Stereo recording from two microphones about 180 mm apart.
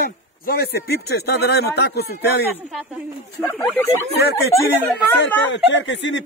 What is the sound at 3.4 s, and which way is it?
Speech, 15° left (ahead or behind).